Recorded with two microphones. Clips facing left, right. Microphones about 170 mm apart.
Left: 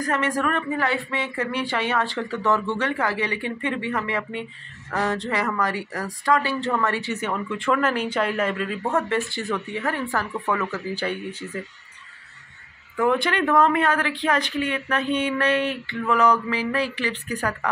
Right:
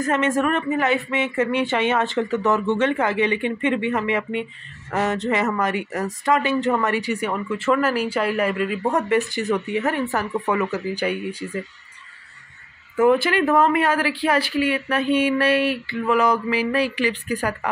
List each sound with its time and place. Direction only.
0.0 s speech: 25° right (ahead or behind)
13.1 s speech: 10° right (ahead or behind)